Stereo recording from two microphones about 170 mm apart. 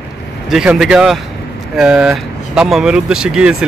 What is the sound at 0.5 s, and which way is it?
Speech, 5° right (ahead or behind).